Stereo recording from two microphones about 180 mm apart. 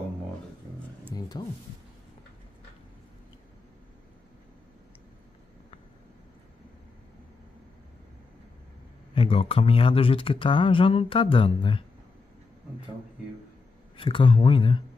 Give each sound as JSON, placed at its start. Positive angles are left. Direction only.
{"t": 1.1, "sound": "a sound", "side_deg": 20}
{"t": 9.1, "sound": "speech", "side_deg": 30}
{"t": 13.9, "sound": "speech", "side_deg": 30}